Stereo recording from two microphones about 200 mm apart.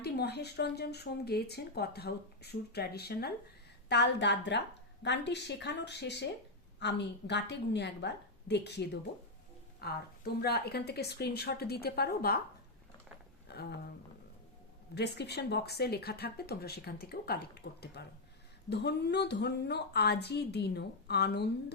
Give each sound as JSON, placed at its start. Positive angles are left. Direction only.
{"t": 0.0, "sound": "a woman's voice", "side_deg": 55}
{"t": 13.5, "sound": "a sound", "side_deg": 55}
{"t": 14.9, "sound": "a woman's voice", "side_deg": 55}